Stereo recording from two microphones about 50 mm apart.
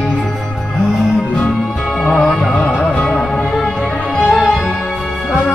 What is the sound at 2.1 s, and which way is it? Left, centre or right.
Music, centre.